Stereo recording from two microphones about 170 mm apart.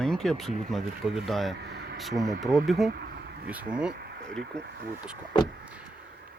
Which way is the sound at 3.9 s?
70° right (ahead or behind).